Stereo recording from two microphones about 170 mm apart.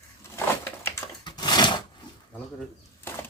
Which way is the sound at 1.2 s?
25° left (ahead or behind).